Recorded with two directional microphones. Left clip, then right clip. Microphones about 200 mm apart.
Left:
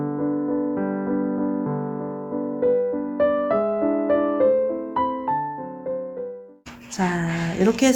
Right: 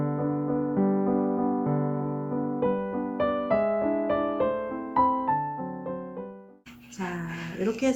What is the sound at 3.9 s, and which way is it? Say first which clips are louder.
Music: left 5 dB; 70° left (ahead or behind).